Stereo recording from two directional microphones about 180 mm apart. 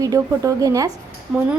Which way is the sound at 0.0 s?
20° right (ahead or behind).